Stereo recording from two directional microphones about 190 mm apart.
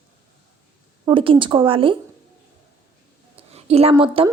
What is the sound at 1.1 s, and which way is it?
Speech, 25° right (ahead or behind).